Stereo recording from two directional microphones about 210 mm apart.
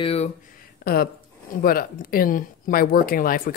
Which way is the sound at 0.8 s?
45° left (ahead or behind).